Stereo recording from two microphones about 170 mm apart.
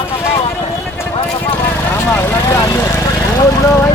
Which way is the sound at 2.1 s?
15° left (ahead or behind).